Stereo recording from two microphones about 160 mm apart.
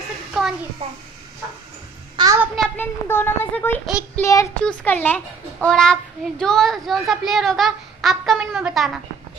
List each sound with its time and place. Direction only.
0.3 s a sound: 5° right (ahead or behind)
2.2 s child singing: 30° right (ahead or behind)
2.8 s speech: 15° left (ahead or behind)
3.8 s a child's voice: centre (ahead or behind)
4.2 s a child's voice: 20° left (ahead or behind); by 8.9 s centre (ahead or behind)